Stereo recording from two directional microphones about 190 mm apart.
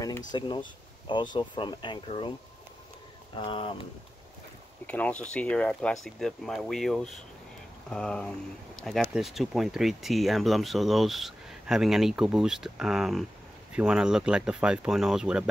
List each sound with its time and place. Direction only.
0.3 s speech: 25° left (ahead or behind)
3.3 s speech: 25° left (ahead or behind)
4.8 s speech: 5° left (ahead or behind)